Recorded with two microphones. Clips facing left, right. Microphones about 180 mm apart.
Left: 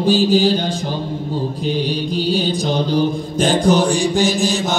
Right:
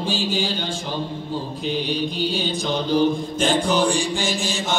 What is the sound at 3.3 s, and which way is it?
Mantra, 40° left (ahead or behind).